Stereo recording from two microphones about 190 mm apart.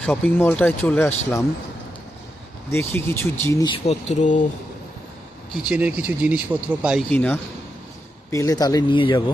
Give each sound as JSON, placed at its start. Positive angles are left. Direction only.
{"t": 0.0, "sound": "speech", "side_deg": 5}
{"t": 2.6, "sound": "speech", "side_deg": 15}
{"t": 3.8, "sound": "speech", "side_deg": 40}
{"t": 5.6, "sound": "speech", "side_deg": -5}
{"t": 7.1, "sound": "speech", "side_deg": 5}